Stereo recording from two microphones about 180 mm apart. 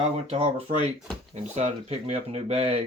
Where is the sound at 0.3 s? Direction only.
35° right (ahead or behind).